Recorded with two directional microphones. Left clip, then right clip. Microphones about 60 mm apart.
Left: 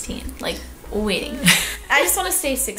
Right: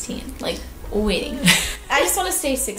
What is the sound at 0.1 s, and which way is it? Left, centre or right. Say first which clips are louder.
A woman's voice: even; left.